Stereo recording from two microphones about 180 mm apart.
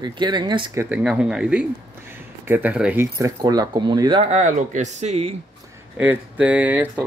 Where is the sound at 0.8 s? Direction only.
5° right (ahead or behind); by 4.2 s 25° right (ahead or behind).